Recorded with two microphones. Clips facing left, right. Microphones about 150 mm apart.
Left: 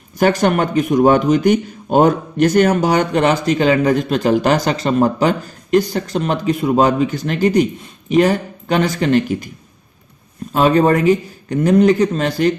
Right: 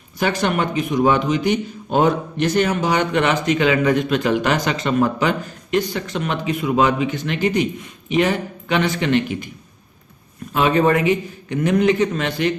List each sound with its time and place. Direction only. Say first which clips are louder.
0.2 s a man's voice: left 5 dB; 45° left (ahead or behind)
10.5 s a man's voice: left 3 dB; 35° left (ahead or behind)